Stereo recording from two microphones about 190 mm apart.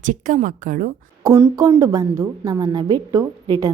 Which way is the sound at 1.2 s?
15° right (ahead or behind).